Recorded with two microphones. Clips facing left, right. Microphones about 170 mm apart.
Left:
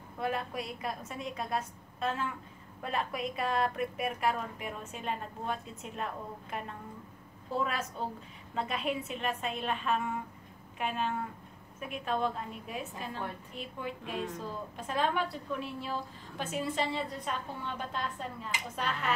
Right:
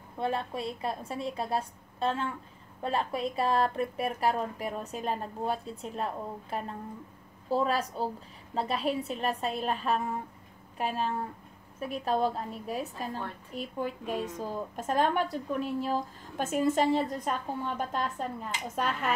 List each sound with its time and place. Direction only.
0.2 s a woman's voice: 30° right (ahead or behind); by 19.1 s 45° right (ahead or behind)